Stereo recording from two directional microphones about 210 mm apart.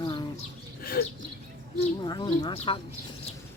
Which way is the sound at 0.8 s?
45° left (ahead or behind).